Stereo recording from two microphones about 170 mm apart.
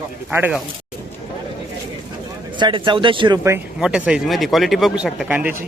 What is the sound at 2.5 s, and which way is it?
Speech, 30° right (ahead or behind).